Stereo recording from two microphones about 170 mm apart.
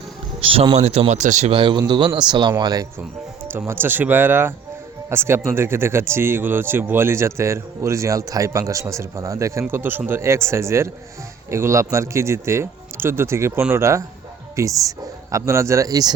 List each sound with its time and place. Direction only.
0.4 s speech: 30° right (ahead or behind)
1.5 s speech: 30° right (ahead or behind)
3.5 s speech: 15° right (ahead or behind)